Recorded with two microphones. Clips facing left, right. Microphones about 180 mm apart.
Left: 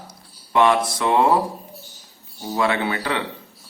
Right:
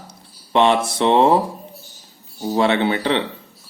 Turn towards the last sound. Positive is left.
turn(degrees=-25)  # may be behind; listen again after turning